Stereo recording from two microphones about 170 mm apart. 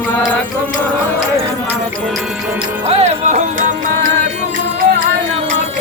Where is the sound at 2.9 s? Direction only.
40° right (ahead or behind).